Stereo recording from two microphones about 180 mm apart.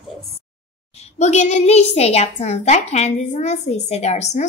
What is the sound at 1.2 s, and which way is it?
A woman's voice, 40° left (ahead or behind).